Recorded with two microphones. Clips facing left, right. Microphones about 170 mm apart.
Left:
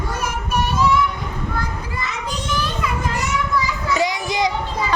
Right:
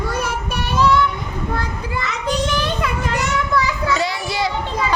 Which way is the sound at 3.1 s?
70° right (ahead or behind).